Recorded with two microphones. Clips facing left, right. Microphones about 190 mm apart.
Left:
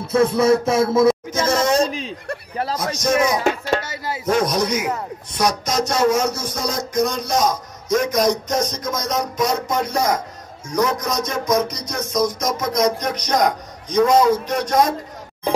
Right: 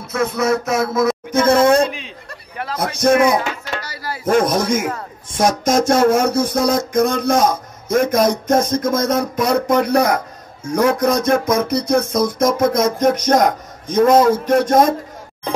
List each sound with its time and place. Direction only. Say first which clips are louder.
0.0 s speech: left 3 dB; 30° left (ahead or behind)
1.3 s a man's voice: right 6 dB; 55° right (ahead or behind)
1.9 s speech: left 2 dB; 40° left (ahead or behind)
2.7 s a man's voice: right 6 dB; 55° right (ahead or behind)
3.8 s speech: left 1 dB; 20° left (ahead or behind)
4.3 s a sound: right 4 dB; 50° right (ahead or behind)